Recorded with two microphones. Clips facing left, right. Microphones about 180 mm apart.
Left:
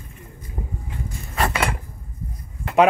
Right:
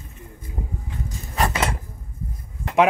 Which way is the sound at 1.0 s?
20° right (ahead or behind).